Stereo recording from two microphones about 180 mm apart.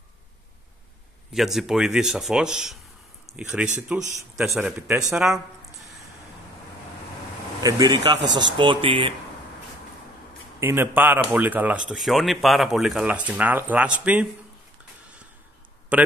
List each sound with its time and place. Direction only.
1.3 s speech: centre (ahead or behind)
7.6 s speech: 20° right (ahead or behind)
8.2 s speech: 85° right
8.5 s speech: 30° right (ahead or behind)
10.6 s speech: 10° right (ahead or behind)
15.9 s speech: 10° right (ahead or behind)